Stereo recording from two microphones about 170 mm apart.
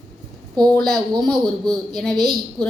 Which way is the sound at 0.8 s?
Centre (ahead or behind).